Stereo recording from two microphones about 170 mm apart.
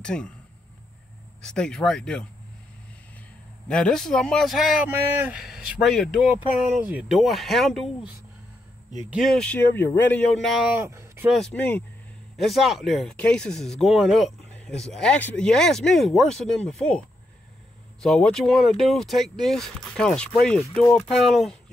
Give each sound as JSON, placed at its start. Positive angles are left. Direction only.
{"t": 0.0, "sound": "speech", "side_deg": 5}
{"t": 1.4, "sound": "speech", "side_deg": 5}
{"t": 3.6, "sound": "speech", "side_deg": 5}
{"t": 9.1, "sound": "speech", "side_deg": 0}
{"t": 10.4, "sound": "speech", "side_deg": 0}
{"t": 10.9, "sound": "a sound", "side_deg": -15}
{"t": 11.2, "sound": "speech", "side_deg": 5}
{"t": 18.0, "sound": "speech", "side_deg": 5}